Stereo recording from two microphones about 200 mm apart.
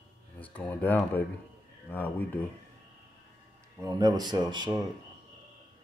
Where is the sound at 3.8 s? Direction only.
20° right (ahead or behind).